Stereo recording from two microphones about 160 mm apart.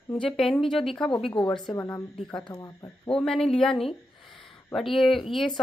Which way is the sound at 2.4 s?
20° left (ahead or behind).